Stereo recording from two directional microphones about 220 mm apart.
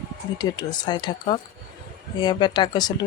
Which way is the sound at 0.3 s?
20° left (ahead or behind).